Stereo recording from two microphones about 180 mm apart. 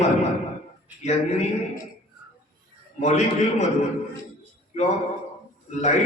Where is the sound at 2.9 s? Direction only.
40° left (ahead or behind).